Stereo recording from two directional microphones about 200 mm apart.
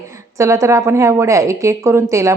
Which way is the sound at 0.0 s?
15° right (ahead or behind).